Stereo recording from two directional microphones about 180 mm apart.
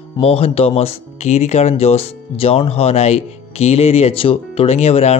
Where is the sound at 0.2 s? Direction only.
30° left (ahead or behind).